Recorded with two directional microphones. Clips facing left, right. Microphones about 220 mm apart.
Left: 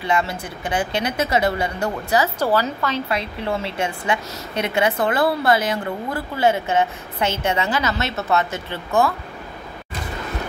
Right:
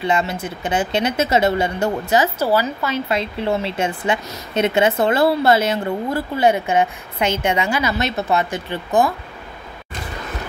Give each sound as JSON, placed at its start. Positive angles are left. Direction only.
{"t": 0.0, "sound": "a woman's voice", "side_deg": -20}
{"t": 2.3, "sound": "a woman's voice", "side_deg": -5}
{"t": 3.1, "sound": "a woman's voice", "side_deg": -25}